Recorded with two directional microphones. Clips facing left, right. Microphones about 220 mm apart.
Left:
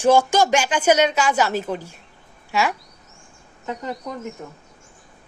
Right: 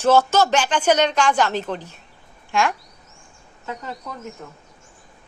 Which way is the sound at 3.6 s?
20° left (ahead or behind).